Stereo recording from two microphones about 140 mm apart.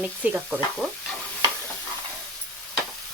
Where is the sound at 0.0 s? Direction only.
10° right (ahead or behind).